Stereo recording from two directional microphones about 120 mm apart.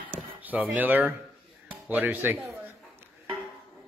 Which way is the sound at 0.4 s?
15° right (ahead or behind).